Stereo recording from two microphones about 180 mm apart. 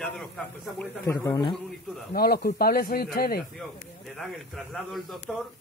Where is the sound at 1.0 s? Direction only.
20° left (ahead or behind).